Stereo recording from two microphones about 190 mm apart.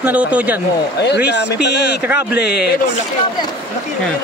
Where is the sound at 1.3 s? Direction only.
60° left (ahead or behind).